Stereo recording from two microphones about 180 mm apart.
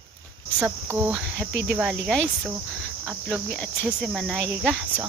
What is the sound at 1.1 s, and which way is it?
Speech, centre (ahead or behind).